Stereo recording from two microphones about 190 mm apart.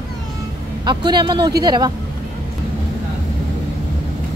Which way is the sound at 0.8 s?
25° right (ahead or behind).